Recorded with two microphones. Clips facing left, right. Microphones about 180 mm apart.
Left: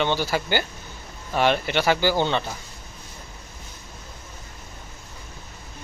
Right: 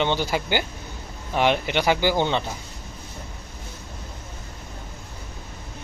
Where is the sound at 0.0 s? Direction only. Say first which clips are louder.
Even; 20° right (ahead or behind).